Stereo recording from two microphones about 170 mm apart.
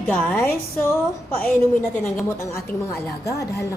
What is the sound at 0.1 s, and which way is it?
Speech, 10° left (ahead or behind).